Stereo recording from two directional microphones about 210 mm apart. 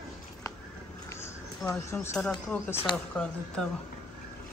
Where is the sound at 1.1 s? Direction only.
10° left (ahead or behind).